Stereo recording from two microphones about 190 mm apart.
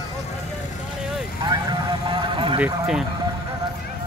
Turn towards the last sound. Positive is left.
turn(degrees=-5)  # may be behind; listen again after turning